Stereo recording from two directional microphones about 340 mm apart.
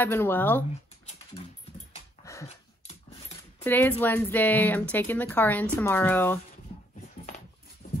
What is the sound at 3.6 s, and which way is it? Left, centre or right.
Speech, centre.